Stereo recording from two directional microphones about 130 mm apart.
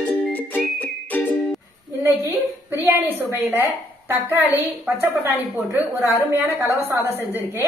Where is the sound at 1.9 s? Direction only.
20° right (ahead or behind).